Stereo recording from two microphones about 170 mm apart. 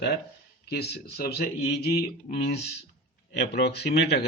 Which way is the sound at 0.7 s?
75° left (ahead or behind).